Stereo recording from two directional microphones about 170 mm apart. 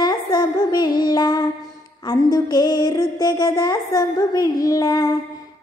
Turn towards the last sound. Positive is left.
turn(degrees=20)  # may be behind; listen again after turning